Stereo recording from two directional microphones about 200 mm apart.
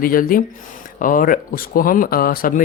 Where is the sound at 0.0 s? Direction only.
45° left (ahead or behind).